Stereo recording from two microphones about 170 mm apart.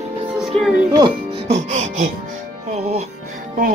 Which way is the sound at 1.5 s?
45° right (ahead or behind).